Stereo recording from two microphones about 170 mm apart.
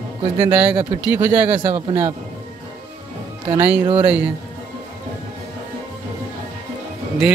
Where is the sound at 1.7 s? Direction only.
40° right (ahead or behind).